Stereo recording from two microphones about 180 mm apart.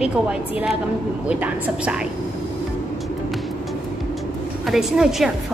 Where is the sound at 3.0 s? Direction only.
Centre (ahead or behind).